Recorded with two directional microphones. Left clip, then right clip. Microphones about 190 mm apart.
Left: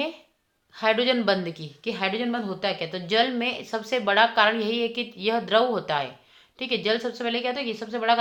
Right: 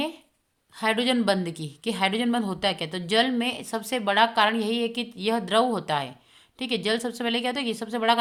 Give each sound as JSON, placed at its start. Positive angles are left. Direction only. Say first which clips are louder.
{"t": 0.8, "sound": "a woman's voice", "louder": "left 2 dB", "side_deg": -35}